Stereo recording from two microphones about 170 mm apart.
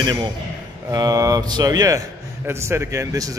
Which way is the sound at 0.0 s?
25° right (ahead or behind).